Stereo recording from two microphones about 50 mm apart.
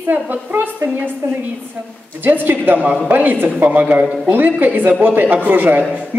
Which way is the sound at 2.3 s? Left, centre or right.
Right.